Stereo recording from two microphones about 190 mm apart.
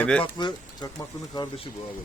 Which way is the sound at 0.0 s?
5° left (ahead or behind).